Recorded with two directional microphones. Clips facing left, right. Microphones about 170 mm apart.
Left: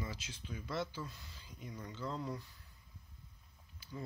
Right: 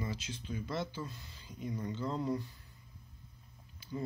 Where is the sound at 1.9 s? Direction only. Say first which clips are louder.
Right 3 dB; 25° right (ahead or behind).